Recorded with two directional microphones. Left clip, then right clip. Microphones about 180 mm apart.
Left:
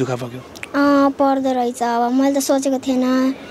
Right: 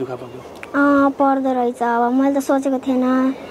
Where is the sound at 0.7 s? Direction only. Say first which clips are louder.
Even; 10° left (ahead or behind).